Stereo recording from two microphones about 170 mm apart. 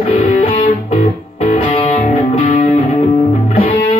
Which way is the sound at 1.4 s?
30° left (ahead or behind).